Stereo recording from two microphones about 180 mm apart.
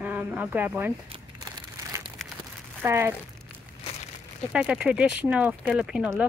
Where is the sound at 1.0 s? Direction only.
30° right (ahead or behind).